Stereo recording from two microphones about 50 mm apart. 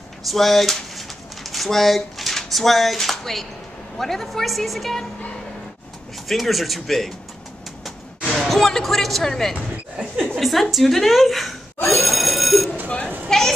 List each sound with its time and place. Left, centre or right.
0.3 s a woman's voice: centre
6.2 s a woman's voice: centre
8.3 s a woman's voice: centre
11.9 s telephone bell ringing: centre
12.8 s sheep: left
13.3 s a sound: centre